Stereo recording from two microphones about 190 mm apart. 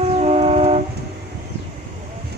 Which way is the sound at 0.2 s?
30° right (ahead or behind).